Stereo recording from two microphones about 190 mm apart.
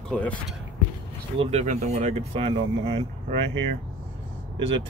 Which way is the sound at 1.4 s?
35° right (ahead or behind).